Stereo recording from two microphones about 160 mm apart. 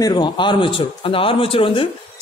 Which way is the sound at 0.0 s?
25° left (ahead or behind).